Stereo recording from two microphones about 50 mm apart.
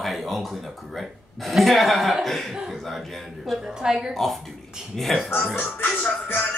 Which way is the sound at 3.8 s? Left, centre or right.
Centre.